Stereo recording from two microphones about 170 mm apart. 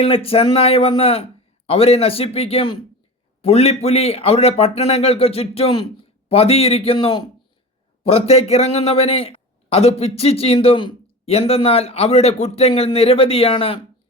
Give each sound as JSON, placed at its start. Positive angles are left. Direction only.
{"t": 0.0, "sound": "a man's voice", "side_deg": 35}